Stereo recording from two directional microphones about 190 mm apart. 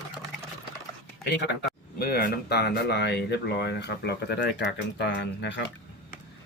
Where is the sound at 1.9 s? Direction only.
55° left (ahead or behind).